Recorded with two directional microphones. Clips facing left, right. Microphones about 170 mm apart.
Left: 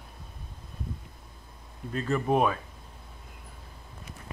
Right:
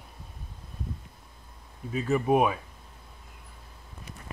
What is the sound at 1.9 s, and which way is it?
Speech, 5° right (ahead or behind).